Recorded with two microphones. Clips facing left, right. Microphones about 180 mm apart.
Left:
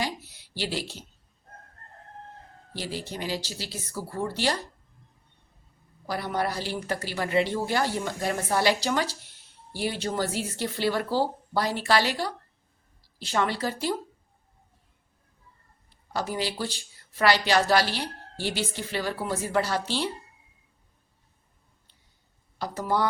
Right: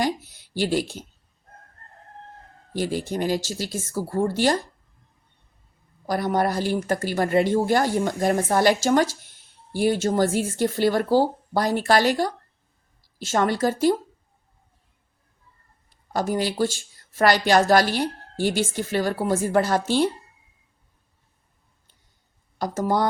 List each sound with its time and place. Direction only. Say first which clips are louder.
0.0 s a sound: right 7 dB; 50° right (ahead or behind)
2.7 s speech: right 9 dB; 50° right (ahead or behind)
6.1 s speech: right 6 dB; 45° right (ahead or behind)
15.9 s speech: right 6 dB; 50° right (ahead or behind)
22.5 s speech: right 4 dB; 45° right (ahead or behind)